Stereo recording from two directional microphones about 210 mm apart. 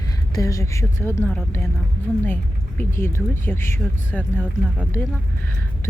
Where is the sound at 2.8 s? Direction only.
10° left (ahead or behind).